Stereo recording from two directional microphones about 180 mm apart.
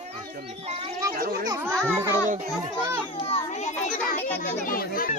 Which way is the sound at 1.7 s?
5° left (ahead or behind).